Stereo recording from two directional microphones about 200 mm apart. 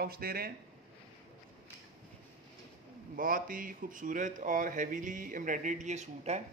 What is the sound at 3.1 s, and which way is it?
Speech, 45° right (ahead or behind).